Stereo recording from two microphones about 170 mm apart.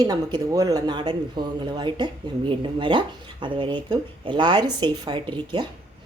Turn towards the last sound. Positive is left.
turn(degrees=-30)  # may be behind; listen again after turning